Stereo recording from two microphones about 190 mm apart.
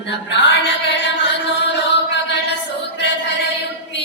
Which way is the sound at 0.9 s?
65° left (ahead or behind).